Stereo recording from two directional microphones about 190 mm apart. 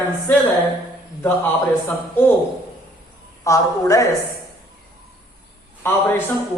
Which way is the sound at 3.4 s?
15° left (ahead or behind).